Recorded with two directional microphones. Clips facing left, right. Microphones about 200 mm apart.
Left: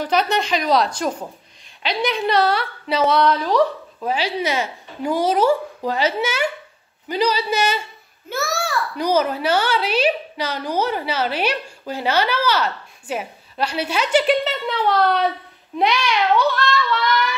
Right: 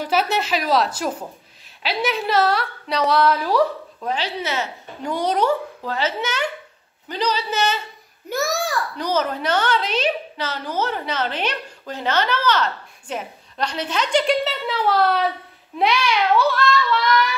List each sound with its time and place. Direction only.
0.0 s a woman's voice: 5° right (ahead or behind)
4.0 s a woman's voice: 10° left (ahead or behind)
8.3 s a child's voice: 15° right (ahead or behind)
8.9 s a woman's voice: 10° left (ahead or behind)